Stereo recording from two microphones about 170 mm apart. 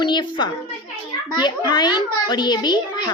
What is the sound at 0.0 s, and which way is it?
A woman's voice, 25° left (ahead or behind).